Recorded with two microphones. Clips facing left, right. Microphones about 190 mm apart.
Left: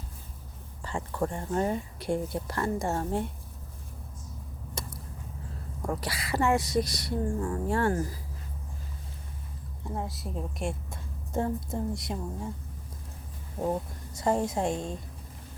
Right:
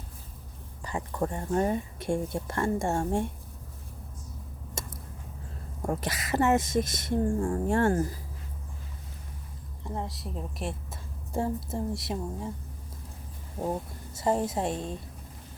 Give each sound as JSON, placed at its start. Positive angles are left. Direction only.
{"t": 0.8, "sound": "a woman's voice", "side_deg": -15}
{"t": 4.8, "sound": "a sound", "side_deg": -25}
{"t": 5.8, "sound": "speech", "side_deg": -25}
{"t": 6.1, "sound": "speech", "side_deg": -45}
{"t": 6.3, "sound": "a woman's voice", "side_deg": -20}
{"t": 9.9, "sound": "a woman's voice", "side_deg": 0}
{"t": 13.6, "sound": "a woman's voice", "side_deg": -5}